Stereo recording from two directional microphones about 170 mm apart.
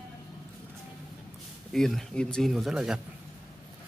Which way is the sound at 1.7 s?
Centre (ahead or behind).